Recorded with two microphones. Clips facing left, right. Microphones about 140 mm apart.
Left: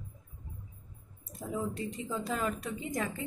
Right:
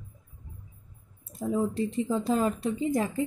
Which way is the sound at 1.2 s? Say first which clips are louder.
Right 8 dB; 30° right (ahead or behind).